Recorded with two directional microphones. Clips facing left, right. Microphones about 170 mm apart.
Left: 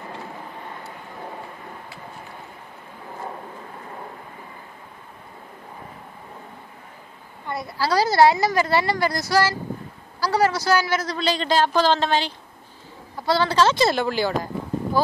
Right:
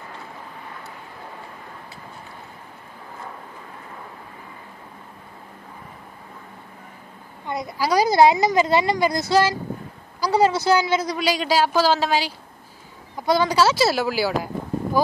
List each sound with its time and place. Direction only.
7.4 s a woman's voice: 20° right (ahead or behind)
13.1 s a man's voice: 15° right (ahead or behind)